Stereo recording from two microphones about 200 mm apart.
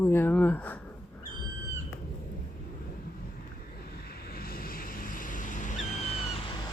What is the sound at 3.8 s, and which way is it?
Vehicle, 50° left (ahead or behind).